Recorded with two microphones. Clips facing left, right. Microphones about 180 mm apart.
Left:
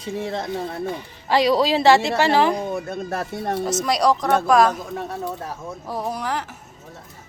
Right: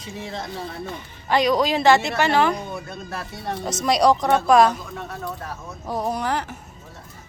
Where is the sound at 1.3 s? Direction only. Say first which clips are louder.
Left 2 dB; 25° left (ahead or behind).